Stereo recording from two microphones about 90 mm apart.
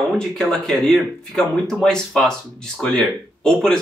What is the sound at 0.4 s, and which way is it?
Speech, 5° left (ahead or behind).